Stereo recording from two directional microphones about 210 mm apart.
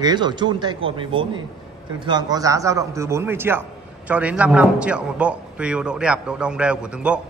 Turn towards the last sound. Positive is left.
turn(degrees=-5)  # may be behind; listen again after turning